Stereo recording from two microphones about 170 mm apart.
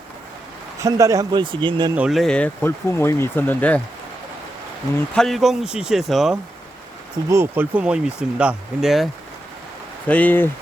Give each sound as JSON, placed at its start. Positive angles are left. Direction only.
{"t": 0.8, "sound": "speech", "side_deg": -20}
{"t": 2.0, "sound": "speech", "side_deg": 0}
{"t": 5.1, "sound": "speech", "side_deg": 0}
{"t": 7.3, "sound": "speech", "side_deg": -15}
{"t": 10.1, "sound": "speech", "side_deg": 10}